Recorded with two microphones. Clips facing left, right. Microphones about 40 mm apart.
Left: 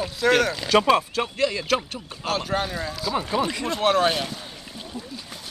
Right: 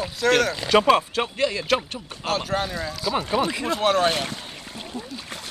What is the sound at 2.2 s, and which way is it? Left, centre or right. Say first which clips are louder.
Speech: even; centre.